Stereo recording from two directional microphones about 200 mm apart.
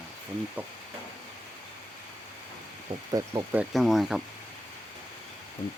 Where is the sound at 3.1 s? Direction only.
15° right (ahead or behind).